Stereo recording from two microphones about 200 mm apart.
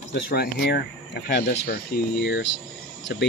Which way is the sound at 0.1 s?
55° left (ahead or behind).